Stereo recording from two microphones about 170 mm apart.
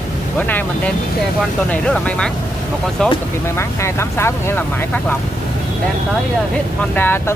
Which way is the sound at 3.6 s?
15° left (ahead or behind).